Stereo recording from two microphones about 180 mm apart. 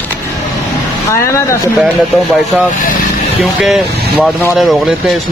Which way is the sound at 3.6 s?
Centre (ahead or behind).